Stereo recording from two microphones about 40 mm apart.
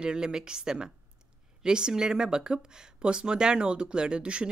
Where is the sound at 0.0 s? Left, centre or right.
Centre.